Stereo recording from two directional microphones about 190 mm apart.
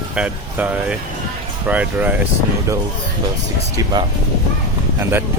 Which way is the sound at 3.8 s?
20° right (ahead or behind).